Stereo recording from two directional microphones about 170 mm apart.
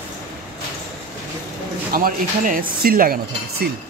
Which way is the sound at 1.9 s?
55° right (ahead or behind).